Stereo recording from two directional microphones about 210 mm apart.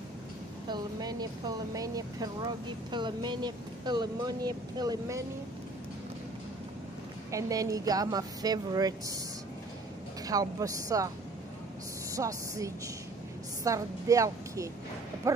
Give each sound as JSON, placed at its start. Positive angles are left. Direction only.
{"t": 0.7, "sound": "speech", "side_deg": -20}
{"t": 7.2, "sound": "speech", "side_deg": -15}
{"t": 10.2, "sound": "speech", "side_deg": -15}
{"t": 12.1, "sound": "a woman's voice", "side_deg": -15}